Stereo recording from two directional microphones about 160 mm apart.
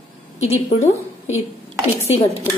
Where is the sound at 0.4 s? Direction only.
45° left (ahead or behind).